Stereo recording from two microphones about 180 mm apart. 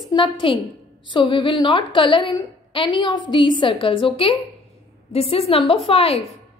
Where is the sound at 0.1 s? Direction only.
30° left (ahead or behind).